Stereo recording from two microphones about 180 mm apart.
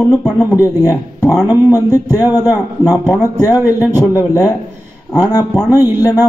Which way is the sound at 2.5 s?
20° left (ahead or behind).